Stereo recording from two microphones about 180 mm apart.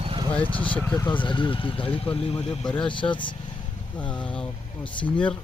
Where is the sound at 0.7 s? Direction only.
5° left (ahead or behind).